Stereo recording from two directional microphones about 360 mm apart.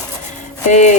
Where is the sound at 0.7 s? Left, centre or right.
Centre.